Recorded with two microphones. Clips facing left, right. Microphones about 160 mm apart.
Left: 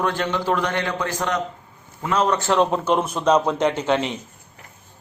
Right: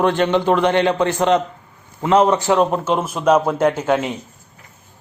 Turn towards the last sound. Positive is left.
turn(degrees=-5)  # may be behind; listen again after turning